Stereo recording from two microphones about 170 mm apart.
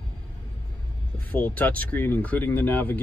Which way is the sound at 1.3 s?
10° left (ahead or behind).